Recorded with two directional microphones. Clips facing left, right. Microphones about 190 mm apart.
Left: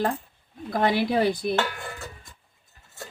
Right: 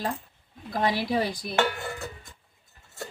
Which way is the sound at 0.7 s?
55° left (ahead or behind).